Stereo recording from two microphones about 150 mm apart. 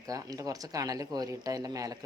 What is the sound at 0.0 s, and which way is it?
Speech, 25° right (ahead or behind).